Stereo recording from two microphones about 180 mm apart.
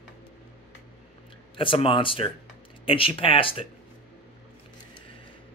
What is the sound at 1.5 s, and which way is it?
Speech, 30° left (ahead or behind).